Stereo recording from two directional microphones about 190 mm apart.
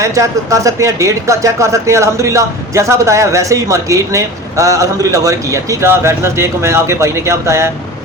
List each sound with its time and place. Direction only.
0.0 s speech: 15° right (ahead or behind)